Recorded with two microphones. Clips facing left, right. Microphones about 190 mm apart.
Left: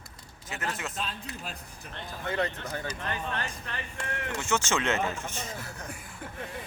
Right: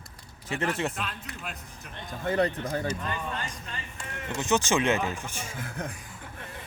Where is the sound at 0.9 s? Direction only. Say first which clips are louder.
Even; 30° left (ahead or behind).